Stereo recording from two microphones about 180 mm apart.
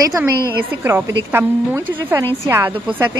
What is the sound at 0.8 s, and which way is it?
A woman's voice, 15° right (ahead or behind).